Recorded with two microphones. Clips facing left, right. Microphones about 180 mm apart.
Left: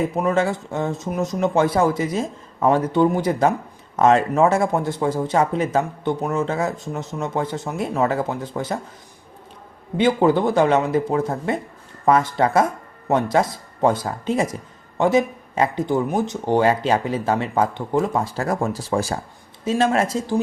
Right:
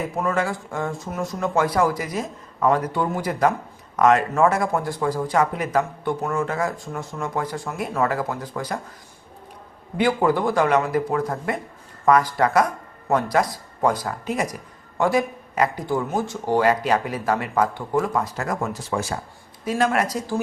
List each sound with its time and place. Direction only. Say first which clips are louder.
0.0 s speech: left 4 dB; 25° left (ahead or behind)
10.0 s speech: left 3 dB; 20° left (ahead or behind)